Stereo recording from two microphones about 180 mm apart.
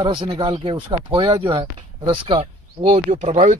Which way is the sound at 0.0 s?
30° right (ahead or behind).